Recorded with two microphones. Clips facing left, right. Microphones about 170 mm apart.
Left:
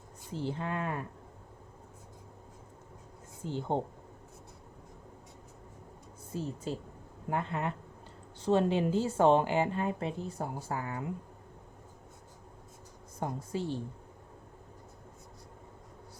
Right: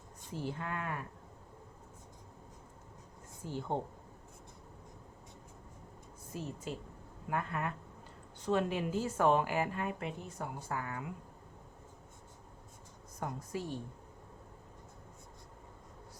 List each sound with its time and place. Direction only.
0.3 s a woman's voice: 25° left (ahead or behind)
3.4 s a woman's voice: 25° left (ahead or behind)
6.7 s a woman's voice: 35° left (ahead or behind)
13.1 s a woman's voice: 25° left (ahead or behind)